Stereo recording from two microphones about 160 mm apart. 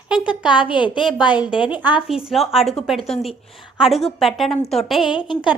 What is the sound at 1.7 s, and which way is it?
A woman's voice, 10° right (ahead or behind).